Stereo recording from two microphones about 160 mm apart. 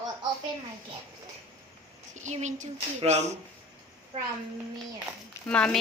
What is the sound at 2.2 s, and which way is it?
A woman's voice, 45° right (ahead or behind).